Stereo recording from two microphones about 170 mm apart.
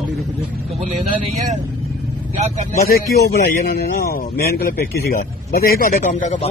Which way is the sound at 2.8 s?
65° left (ahead or behind).